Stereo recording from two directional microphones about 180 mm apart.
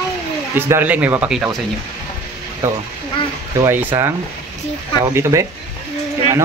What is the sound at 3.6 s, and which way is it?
Speech, 10° right (ahead or behind).